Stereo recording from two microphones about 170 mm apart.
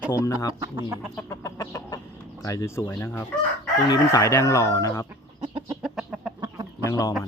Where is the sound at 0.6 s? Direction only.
20° right (ahead or behind).